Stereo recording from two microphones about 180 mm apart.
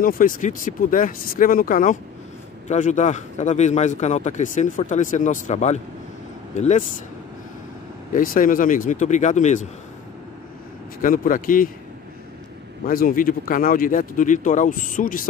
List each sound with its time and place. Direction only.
0.0 s a man's voice: 50° left (ahead or behind)
8.1 s speech: 50° left (ahead or behind)
11.0 s speech: 50° left (ahead or behind)
12.8 s speech: 50° left (ahead or behind)